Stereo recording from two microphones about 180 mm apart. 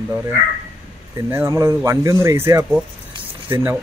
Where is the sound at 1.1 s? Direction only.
15° right (ahead or behind).